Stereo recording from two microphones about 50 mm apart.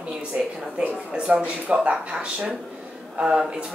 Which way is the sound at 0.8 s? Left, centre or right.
Right.